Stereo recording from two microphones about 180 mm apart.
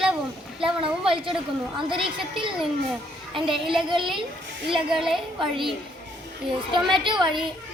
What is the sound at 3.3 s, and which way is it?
Speech, centre (ahead or behind).